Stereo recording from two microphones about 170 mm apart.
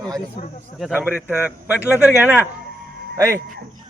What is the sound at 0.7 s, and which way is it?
A man's voice, 5° right (ahead or behind).